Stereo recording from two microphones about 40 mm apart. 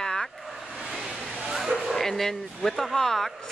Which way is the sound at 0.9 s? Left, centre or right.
Centre.